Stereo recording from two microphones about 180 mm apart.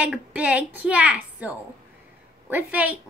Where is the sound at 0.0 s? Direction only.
5° right (ahead or behind).